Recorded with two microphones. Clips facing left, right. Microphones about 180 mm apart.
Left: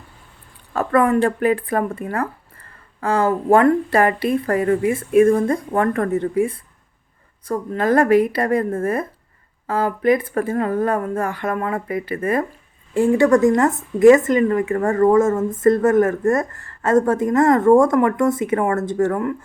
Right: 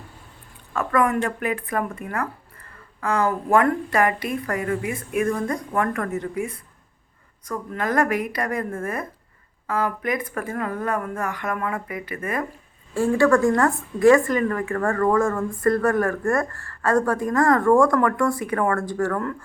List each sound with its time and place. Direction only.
0.7 s a woman's voice: 35° left (ahead or behind)
12.9 s a woman's voice: 20° left (ahead or behind)